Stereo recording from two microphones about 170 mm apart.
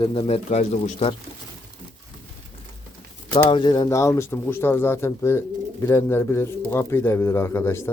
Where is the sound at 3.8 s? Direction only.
15° left (ahead or behind).